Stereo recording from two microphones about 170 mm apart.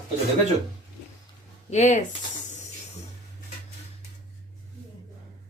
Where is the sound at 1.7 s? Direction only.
45° left (ahead or behind).